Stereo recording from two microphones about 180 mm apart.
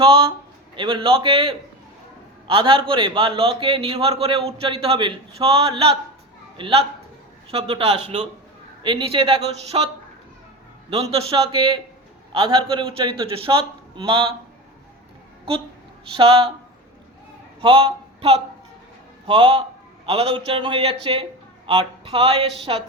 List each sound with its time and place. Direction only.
0.0 s a man's voice: 30° right (ahead or behind)
10.8 s a man's voice: 35° right (ahead or behind)
16.1 s a man's voice: 30° right (ahead or behind)
17.6 s a man's voice: 30° right (ahead or behind)